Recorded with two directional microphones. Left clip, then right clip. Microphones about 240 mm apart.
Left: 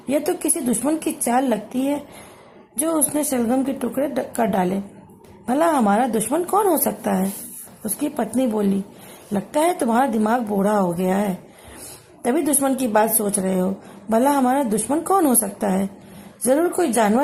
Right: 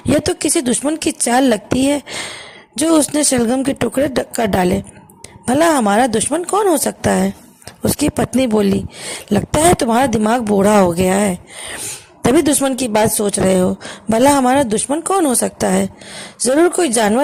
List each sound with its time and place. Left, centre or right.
0.2 s a woman's voice: right
12.5 s a woman's voice: right